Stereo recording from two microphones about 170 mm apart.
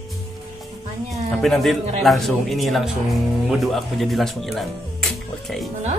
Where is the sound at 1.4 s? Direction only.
Centre (ahead or behind).